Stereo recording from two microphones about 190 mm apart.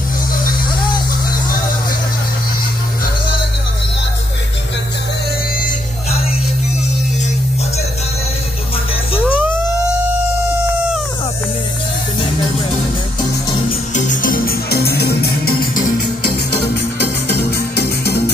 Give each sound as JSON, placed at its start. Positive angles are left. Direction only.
{"t": 0.3, "sound": "music", "side_deg": 50}
{"t": 9.2, "sound": "music", "side_deg": -10}
{"t": 13.7, "sound": "music", "side_deg": 40}